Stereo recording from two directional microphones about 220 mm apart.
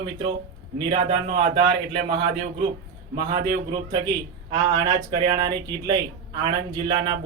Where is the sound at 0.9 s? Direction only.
25° right (ahead or behind).